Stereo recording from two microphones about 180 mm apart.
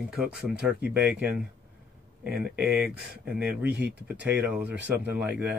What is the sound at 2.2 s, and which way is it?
Speech, 60° right (ahead or behind).